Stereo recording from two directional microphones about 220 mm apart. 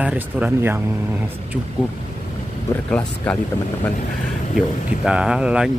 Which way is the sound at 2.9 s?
5° left (ahead or behind).